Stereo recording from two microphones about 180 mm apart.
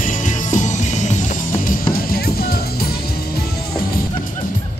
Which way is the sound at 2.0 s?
55° left (ahead or behind).